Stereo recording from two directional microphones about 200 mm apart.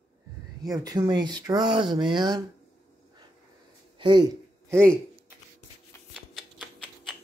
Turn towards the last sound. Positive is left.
turn(degrees=0)  # may be behind; listen again after turning